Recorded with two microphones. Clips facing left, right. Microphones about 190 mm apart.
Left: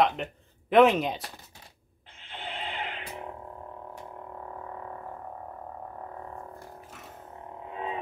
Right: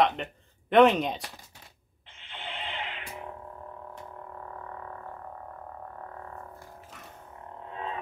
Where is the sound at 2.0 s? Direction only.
40° left (ahead or behind).